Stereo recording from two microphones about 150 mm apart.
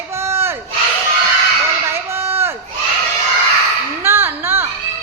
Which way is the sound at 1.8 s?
15° right (ahead or behind).